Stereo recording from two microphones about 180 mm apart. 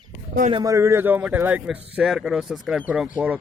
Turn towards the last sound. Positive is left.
turn(degrees=-10)  # may be behind; listen again after turning